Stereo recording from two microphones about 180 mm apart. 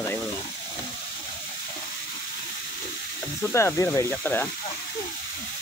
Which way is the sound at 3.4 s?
15° left (ahead or behind).